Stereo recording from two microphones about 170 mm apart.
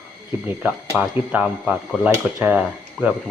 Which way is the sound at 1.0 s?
10° right (ahead or behind).